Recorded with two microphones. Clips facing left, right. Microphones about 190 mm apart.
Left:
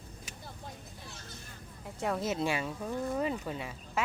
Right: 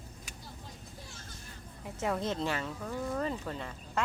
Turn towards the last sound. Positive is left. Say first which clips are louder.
# left 1 dB
turn(degrees=10)  # may be behind; listen again after turning